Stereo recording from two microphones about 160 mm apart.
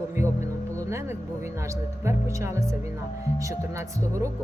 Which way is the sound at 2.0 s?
20° right (ahead or behind).